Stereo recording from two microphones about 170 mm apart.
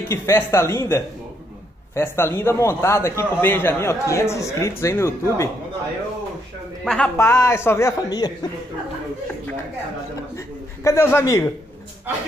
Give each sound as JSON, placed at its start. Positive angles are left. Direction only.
{"t": 0.1, "sound": "a man's voice", "side_deg": 15}
{"t": 6.8, "sound": "speech", "side_deg": 5}
{"t": 7.2, "sound": "a man's voice", "side_deg": 15}
{"t": 10.3, "sound": "a man's voice", "side_deg": 15}